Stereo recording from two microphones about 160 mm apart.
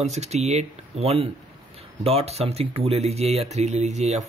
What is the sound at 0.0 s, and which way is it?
Speech, 45° right (ahead or behind).